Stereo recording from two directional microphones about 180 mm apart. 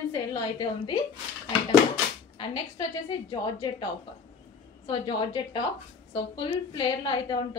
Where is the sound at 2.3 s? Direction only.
30° left (ahead or behind).